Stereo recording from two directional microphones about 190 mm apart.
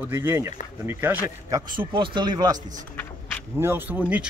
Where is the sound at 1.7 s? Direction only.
25° right (ahead or behind).